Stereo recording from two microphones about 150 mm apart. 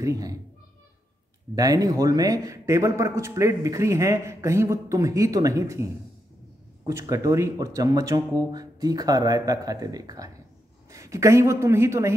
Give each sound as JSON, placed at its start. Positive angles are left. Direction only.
{"t": 0.0, "sound": "speech", "side_deg": -25}
{"t": 1.5, "sound": "speech", "side_deg": -25}
{"t": 6.9, "sound": "a woman's voice", "side_deg": -20}